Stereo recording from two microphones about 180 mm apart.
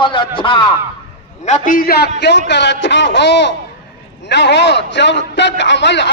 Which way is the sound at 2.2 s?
75° left (ahead or behind).